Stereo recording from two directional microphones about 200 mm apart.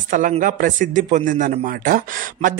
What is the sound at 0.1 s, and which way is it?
Speech, 40° right (ahead or behind).